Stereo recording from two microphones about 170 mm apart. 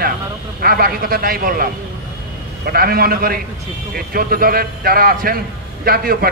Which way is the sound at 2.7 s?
60° right (ahead or behind).